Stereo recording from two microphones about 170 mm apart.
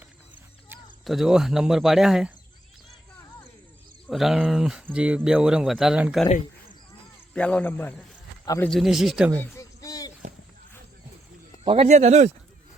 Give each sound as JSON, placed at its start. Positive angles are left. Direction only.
{"t": 1.0, "sound": "speech", "side_deg": 0}
{"t": 4.1, "sound": "speech", "side_deg": 0}
{"t": 7.3, "sound": "a man's voice", "side_deg": 5}
{"t": 8.7, "sound": "speech", "side_deg": 0}
{"t": 9.6, "sound": "a sound", "side_deg": 20}
{"t": 11.6, "sound": "speech", "side_deg": -35}